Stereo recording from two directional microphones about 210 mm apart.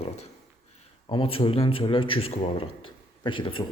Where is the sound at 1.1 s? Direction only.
25° left (ahead or behind).